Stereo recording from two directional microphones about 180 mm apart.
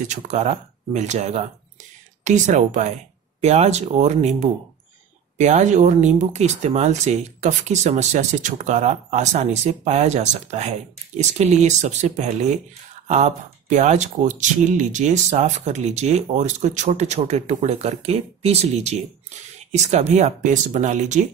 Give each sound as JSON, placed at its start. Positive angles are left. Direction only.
{"t": 0.0, "sound": "speech", "side_deg": -40}